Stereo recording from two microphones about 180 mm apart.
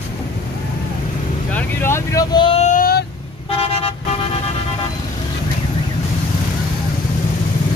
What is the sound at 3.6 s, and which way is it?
Vehicle, 35° left (ahead or behind).